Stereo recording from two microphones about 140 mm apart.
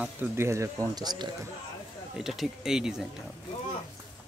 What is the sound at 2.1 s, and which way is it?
Speech, 5° right (ahead or behind).